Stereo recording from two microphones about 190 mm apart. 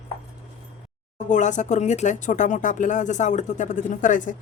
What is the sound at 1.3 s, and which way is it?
Speech, 40° left (ahead or behind).